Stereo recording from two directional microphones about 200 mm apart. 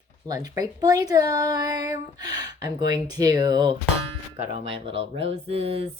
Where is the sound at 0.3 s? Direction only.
15° right (ahead or behind).